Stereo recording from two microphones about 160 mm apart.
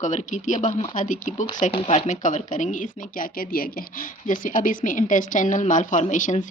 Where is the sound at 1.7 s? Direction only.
40° left (ahead or behind).